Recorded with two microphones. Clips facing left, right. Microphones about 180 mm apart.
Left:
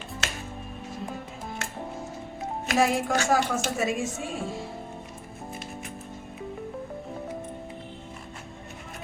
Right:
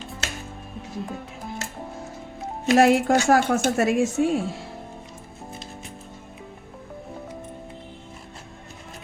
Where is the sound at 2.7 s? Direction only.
70° right (ahead or behind).